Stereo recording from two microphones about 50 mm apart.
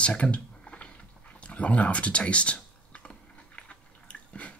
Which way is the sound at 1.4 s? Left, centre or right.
Left.